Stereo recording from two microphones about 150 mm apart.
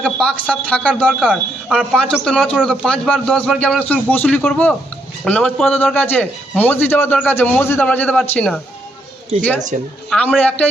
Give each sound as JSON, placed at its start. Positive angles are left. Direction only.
{"t": 0.0, "sound": "a man's voice", "side_deg": 5}
{"t": 9.7, "sound": "speech", "side_deg": -55}
{"t": 10.1, "sound": "a man's voice", "side_deg": 10}